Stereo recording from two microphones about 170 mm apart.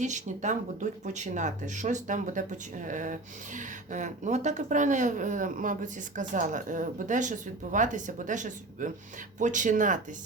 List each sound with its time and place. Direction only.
0.0 s speech: 45° right (ahead or behind)